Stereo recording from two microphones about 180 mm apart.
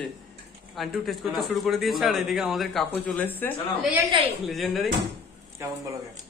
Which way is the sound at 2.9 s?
10° left (ahead or behind).